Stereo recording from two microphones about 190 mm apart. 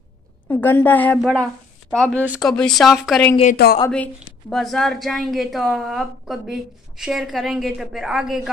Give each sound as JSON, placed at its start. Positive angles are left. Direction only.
{"t": 0.5, "sound": "a woman's voice", "side_deg": 10}